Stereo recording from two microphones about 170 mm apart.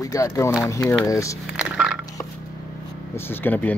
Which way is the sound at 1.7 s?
5° right (ahead or behind).